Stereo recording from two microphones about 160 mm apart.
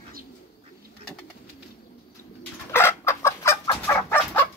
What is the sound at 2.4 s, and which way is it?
Chicken, 15° left (ahead or behind).